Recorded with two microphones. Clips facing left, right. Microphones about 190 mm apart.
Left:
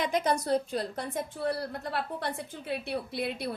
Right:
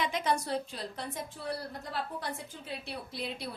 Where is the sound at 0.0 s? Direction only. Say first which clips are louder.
Left 3 dB; 45° left (ahead or behind).